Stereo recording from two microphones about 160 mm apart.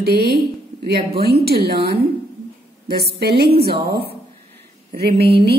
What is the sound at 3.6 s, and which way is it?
A woman's voice, 75° right (ahead or behind).